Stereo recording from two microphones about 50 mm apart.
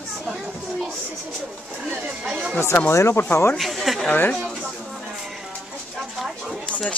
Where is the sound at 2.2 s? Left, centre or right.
Right.